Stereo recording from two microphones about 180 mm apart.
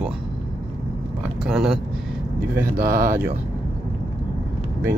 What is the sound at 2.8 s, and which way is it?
Speech, 50° right (ahead or behind).